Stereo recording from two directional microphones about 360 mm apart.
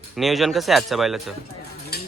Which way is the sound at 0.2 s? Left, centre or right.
Centre.